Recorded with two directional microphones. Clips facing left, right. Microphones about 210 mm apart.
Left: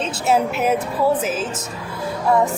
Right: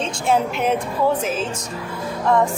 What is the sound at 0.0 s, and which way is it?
A woman's voice, 5° left (ahead or behind).